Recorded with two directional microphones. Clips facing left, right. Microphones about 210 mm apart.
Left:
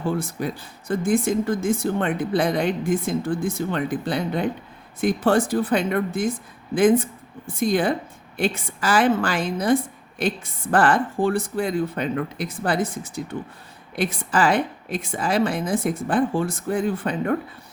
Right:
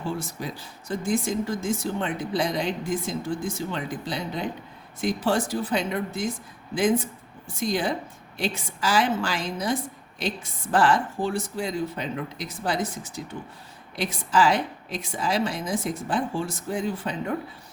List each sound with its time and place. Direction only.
0.0 s a woman's voice: 55° left (ahead or behind)